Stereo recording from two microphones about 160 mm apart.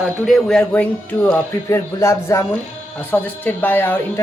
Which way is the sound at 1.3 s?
15° left (ahead or behind).